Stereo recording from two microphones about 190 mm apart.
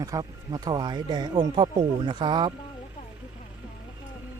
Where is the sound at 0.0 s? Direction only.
20° right (ahead or behind).